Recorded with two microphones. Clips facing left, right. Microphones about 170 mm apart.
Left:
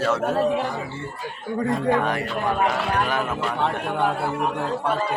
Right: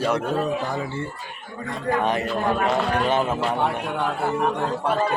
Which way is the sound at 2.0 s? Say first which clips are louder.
Right 2 dB; 20° right (ahead or behind).